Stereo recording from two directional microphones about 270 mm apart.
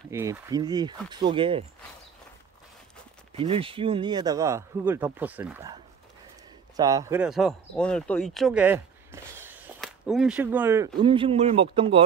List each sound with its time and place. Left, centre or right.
0.1 s speech: centre
3.3 s speech: centre
6.8 s speech: centre